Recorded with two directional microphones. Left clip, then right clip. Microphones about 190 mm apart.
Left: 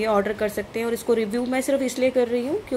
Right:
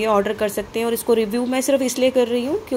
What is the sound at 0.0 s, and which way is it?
A woman's voice, 5° right (ahead or behind).